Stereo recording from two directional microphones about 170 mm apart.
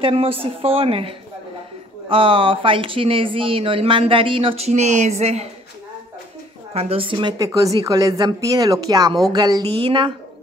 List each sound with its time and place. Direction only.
0.0 s speech: 35° right (ahead or behind)
6.7 s a woman's voice: 35° right (ahead or behind)